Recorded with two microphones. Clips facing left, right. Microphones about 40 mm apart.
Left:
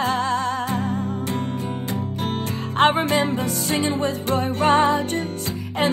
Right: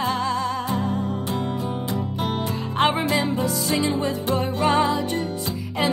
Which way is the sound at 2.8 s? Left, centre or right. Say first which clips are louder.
Left 3 dB; left.